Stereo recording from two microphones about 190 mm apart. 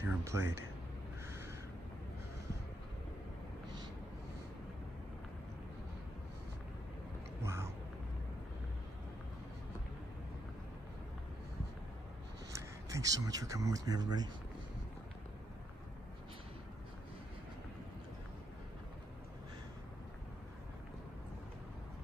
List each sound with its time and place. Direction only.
0.0 s speech: 15° right (ahead or behind)
1.2 s crow: 15° right (ahead or behind)
7.4 s a sound: 15° right (ahead or behind)
12.5 s speech: 15° right (ahead or behind)